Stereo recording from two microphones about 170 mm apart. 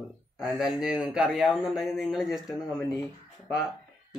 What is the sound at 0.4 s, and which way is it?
A man's voice, 5° right (ahead or behind).